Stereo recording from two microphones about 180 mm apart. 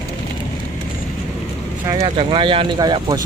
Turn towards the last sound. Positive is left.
turn(degrees=-20)  # may be behind; listen again after turning